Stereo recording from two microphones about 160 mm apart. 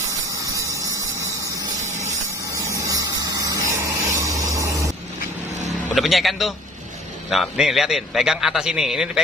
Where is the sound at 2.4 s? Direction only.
20° right (ahead or behind).